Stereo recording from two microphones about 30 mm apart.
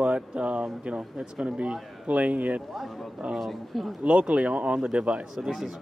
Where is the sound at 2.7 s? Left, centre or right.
Centre.